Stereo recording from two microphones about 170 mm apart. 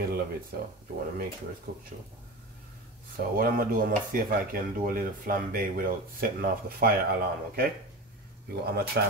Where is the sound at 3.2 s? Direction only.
55° right (ahead or behind).